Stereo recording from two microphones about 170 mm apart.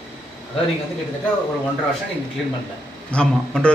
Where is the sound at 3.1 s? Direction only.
5° left (ahead or behind).